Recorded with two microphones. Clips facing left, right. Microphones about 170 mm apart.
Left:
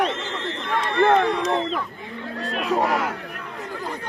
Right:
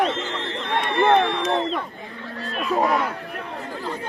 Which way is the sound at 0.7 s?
25° right (ahead or behind).